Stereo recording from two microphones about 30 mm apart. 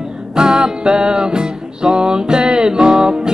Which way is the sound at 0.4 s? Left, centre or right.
Right.